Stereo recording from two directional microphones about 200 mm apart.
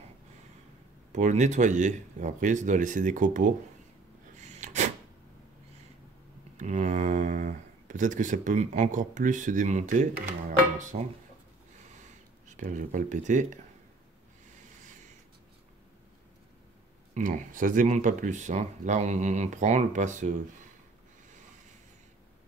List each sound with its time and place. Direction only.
1.1 s speech: 35° right (ahead or behind)
4.4 s a sound: 35° right (ahead or behind)
6.5 s speech: 35° right (ahead or behind)
12.4 s speech: 40° right (ahead or behind)
17.1 s speech: 40° right (ahead or behind)